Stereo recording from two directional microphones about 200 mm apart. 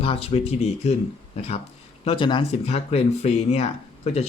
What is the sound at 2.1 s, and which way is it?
Speech, 25° left (ahead or behind).